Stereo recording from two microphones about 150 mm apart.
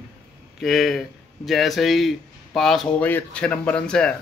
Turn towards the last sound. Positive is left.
turn(degrees=5)  # may be behind; listen again after turning